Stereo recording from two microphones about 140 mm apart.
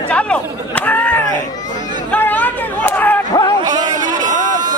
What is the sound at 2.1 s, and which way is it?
Chatter, 10° left (ahead or behind).